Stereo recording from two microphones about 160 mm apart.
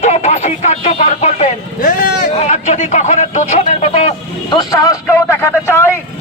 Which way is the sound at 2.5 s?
45° left (ahead or behind).